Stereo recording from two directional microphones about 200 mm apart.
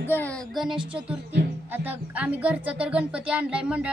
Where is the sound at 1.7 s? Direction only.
10° right (ahead or behind).